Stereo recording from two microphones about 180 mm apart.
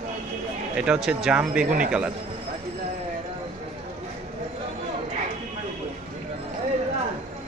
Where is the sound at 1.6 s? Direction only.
45° right (ahead or behind).